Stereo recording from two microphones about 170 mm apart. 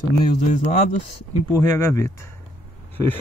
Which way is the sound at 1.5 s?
20° left (ahead or behind).